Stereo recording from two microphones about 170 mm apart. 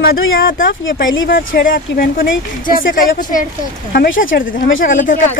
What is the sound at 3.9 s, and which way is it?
Speech, 60° left (ahead or behind).